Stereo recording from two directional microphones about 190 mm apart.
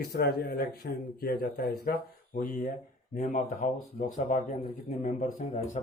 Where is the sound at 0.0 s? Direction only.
55° left (ahead or behind).